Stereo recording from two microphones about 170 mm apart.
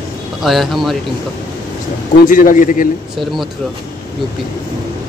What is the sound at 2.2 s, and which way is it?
Speech, 50° left (ahead or behind).